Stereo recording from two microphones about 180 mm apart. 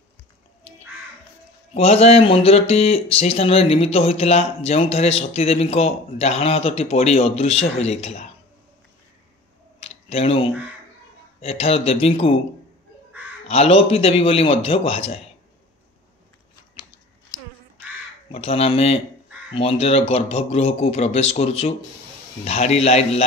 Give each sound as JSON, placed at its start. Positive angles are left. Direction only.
{"t": 1.7, "sound": "speech", "side_deg": 35}
{"t": 9.8, "sound": "clicking", "side_deg": 35}
{"t": 11.4, "sound": "speech", "side_deg": 35}
{"t": 13.5, "sound": "speech", "side_deg": 35}
{"t": 17.3, "sound": "crow", "side_deg": 20}
{"t": 18.3, "sound": "speech", "side_deg": 30}